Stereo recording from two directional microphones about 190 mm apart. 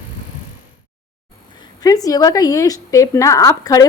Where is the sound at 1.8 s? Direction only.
20° left (ahead or behind).